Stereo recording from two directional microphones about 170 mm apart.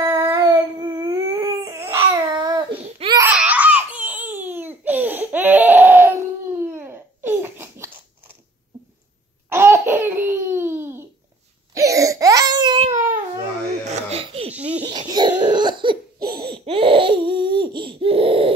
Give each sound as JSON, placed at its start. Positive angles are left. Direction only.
{"t": 0.0, "sound": "a sound", "side_deg": -15}
{"t": 3.2, "sound": "crying", "side_deg": -10}
{"t": 9.5, "sound": "laughter", "side_deg": -15}
{"t": 11.7, "sound": "a sound", "side_deg": -20}
{"t": 12.9, "sound": "baby cry", "side_deg": -50}
{"t": 14.1, "sound": "laughter", "side_deg": -35}
{"t": 14.5, "sound": "baby laughter", "side_deg": -10}
{"t": 14.9, "sound": "a sound", "side_deg": -25}
{"t": 15.5, "sound": "cough", "side_deg": -25}